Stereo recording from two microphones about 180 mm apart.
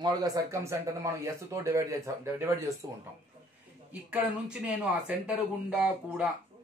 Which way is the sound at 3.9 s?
5° right (ahead or behind).